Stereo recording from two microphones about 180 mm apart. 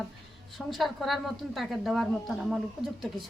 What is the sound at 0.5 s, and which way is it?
A woman's voice, centre (ahead or behind).